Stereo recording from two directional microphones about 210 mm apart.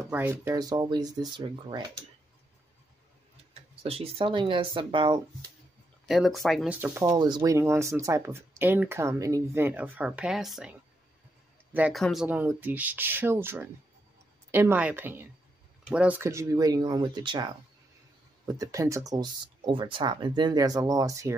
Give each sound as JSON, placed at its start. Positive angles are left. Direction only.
{"t": 0.0, "sound": "speech", "side_deg": -10}
{"t": 3.8, "sound": "speech", "side_deg": -30}
{"t": 6.0, "sound": "speech", "side_deg": 0}